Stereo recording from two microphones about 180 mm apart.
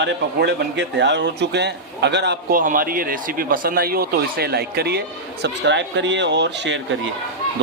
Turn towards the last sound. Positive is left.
turn(degrees=-85)